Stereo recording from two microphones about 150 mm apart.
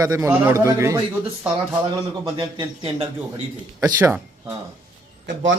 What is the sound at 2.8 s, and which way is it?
Speech, 40° right (ahead or behind).